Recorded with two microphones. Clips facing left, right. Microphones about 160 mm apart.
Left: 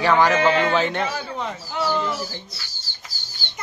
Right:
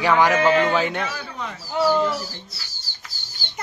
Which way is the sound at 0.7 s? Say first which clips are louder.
Left 1 dB; 10° right (ahead or behind).